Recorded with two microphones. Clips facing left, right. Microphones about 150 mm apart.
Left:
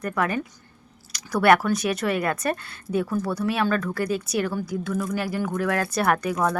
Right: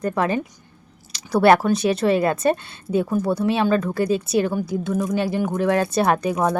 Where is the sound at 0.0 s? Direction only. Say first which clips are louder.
Right 4 dB; 25° right (ahead or behind).